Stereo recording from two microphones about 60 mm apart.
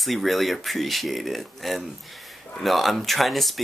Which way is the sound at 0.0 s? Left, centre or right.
Centre.